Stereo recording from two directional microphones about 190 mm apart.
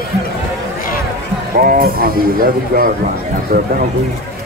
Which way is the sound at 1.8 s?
50° right (ahead or behind).